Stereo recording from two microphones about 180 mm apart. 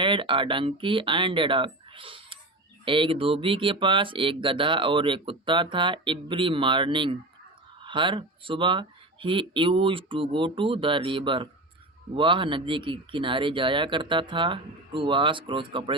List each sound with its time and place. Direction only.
0.0 s speech: 30° right (ahead or behind)